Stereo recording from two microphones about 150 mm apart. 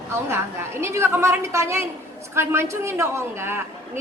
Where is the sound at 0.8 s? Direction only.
15° right (ahead or behind).